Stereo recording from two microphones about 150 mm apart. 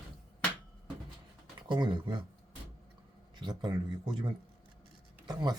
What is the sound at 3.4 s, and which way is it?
Speech, 30° right (ahead or behind).